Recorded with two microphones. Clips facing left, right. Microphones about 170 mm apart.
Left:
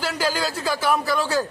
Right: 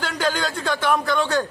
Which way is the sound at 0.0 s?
5° left (ahead or behind).